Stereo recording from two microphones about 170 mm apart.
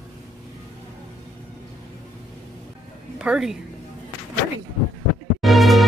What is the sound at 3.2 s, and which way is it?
Speech, 5° right (ahead or behind).